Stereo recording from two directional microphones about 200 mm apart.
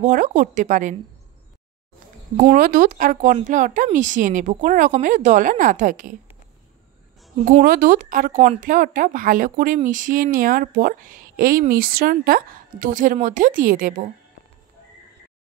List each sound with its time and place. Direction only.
0.0 s speech: 40° right (ahead or behind)
2.5 s speech: 45° right (ahead or behind)
7.4 s a woman's voice: 45° right (ahead or behind)